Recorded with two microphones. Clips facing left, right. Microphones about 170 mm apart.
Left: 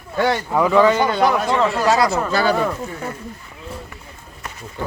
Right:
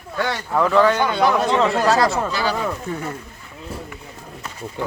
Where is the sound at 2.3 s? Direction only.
50° left (ahead or behind).